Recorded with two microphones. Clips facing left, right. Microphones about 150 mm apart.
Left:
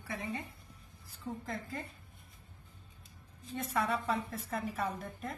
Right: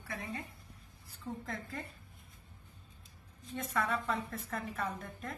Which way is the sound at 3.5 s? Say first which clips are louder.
Left 1 dB; centre (ahead or behind).